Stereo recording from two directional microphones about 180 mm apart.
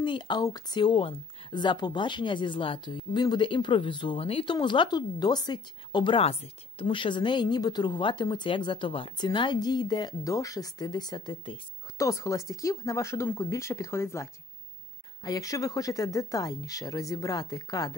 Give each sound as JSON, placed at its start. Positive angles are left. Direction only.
{"t": 0.0, "sound": "speech", "side_deg": 25}